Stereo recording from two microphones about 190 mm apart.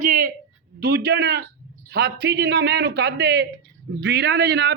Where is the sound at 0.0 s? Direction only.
45° right (ahead or behind).